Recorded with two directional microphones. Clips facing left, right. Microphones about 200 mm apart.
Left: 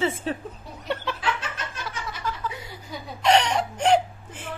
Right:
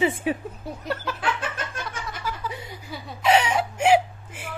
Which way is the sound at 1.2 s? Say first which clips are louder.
Right 1 dB; 50° right (ahead or behind).